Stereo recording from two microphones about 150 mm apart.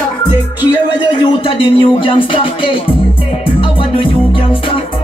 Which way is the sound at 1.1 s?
35° left (ahead or behind).